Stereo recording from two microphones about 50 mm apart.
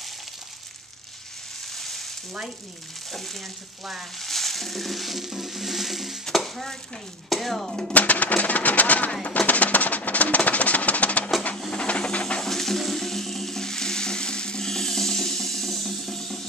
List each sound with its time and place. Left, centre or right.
1.8 s frying: centre
3.1 s speech: centre
4.2 s a sound: centre
6.2 s stir: centre
7.2 s speech: centre
7.9 s speech: left
9.5 s music: left
11.7 s steam: centre
12.4 s a sound: centre